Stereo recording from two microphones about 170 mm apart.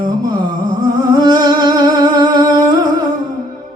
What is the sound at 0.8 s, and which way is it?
Music, 25° right (ahead or behind).